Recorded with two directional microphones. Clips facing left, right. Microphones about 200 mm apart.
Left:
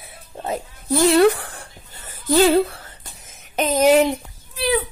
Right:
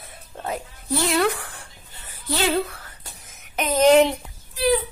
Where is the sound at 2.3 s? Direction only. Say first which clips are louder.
Left 8 dB; 35° left (ahead or behind).